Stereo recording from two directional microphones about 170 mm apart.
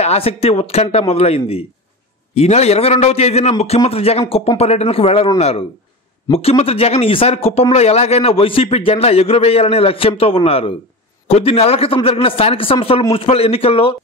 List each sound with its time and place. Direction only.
0.0 s speech: 35° left (ahead or behind)